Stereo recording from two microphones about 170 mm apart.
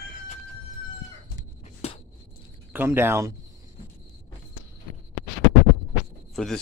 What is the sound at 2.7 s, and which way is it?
Speech, 10° right (ahead or behind).